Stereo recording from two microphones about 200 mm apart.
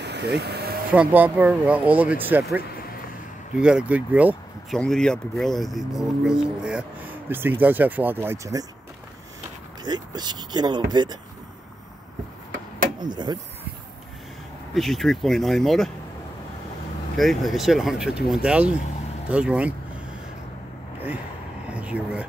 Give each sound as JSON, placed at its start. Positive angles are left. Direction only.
{"t": 0.0, "sound": "a sound", "side_deg": -55}
{"t": 0.9, "sound": "speech", "side_deg": -10}
{"t": 4.7, "sound": "speech", "side_deg": 5}
{"t": 9.8, "sound": "speech", "side_deg": -20}
{"t": 13.1, "sound": "speech", "side_deg": -20}
{"t": 14.7, "sound": "speech", "side_deg": 0}
{"t": 17.2, "sound": "speech", "side_deg": 0}
{"t": 21.6, "sound": "a sound", "side_deg": -5}